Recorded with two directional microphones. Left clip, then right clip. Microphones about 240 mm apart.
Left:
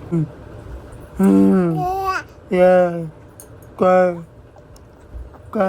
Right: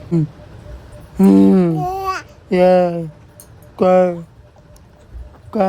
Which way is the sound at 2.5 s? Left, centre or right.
Right.